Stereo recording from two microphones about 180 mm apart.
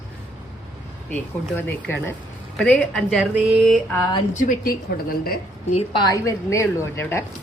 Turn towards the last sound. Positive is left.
turn(degrees=10)  # may be behind; listen again after turning